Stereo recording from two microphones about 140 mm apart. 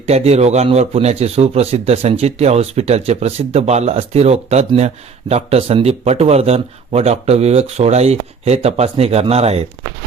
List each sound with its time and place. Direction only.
0.0 s speech: 50° right (ahead or behind)